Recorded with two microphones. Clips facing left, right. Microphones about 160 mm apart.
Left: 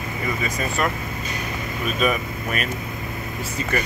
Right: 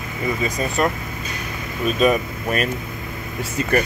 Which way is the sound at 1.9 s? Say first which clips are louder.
Right 5 dB; 35° right (ahead or behind).